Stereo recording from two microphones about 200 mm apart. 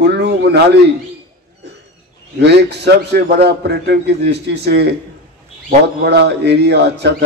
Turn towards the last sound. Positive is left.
turn(degrees=-55)  # may be behind; listen again after turning